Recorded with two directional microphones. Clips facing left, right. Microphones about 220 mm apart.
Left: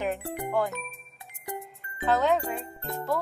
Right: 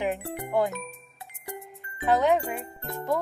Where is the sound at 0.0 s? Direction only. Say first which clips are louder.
Right 1 dB; 15° right (ahead or behind).